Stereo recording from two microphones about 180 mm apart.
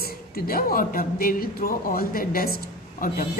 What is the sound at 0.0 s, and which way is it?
A woman's voice, 55° left (ahead or behind).